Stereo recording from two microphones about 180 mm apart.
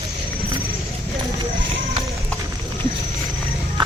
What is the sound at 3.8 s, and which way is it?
Music, 25° right (ahead or behind).